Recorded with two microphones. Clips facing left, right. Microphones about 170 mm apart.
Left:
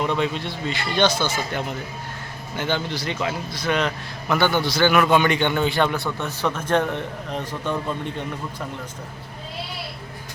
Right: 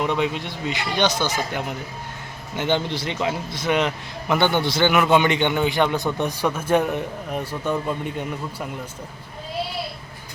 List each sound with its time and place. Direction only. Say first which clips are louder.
0.0 s a man's voice: even; 15° right (ahead or behind)